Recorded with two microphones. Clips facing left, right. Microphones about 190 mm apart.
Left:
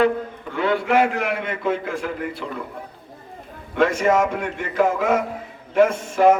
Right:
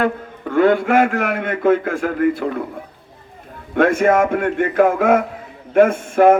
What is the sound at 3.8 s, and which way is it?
A man's voice, 55° right (ahead or behind).